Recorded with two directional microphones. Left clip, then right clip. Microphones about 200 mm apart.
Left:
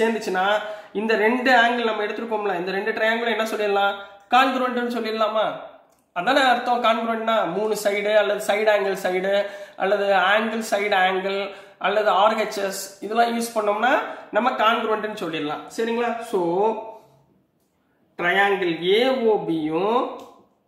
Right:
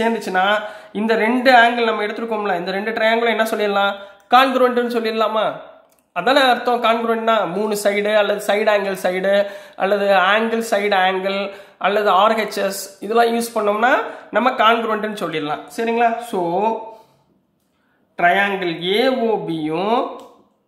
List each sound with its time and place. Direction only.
0.0 s a man's voice: 35° right (ahead or behind)
18.1 s a man's voice: 40° right (ahead or behind)